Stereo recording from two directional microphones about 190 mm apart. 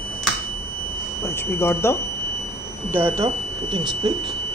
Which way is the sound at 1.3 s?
15° left (ahead or behind).